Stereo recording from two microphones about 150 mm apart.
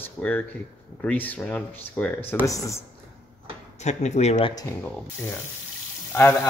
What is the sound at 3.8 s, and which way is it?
Speech, 50° left (ahead or behind).